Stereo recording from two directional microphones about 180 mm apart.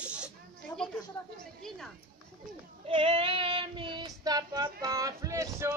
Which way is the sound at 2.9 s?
30° right (ahead or behind).